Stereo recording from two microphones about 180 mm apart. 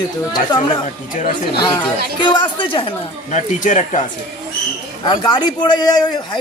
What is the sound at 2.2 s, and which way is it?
Speech, 25° left (ahead or behind).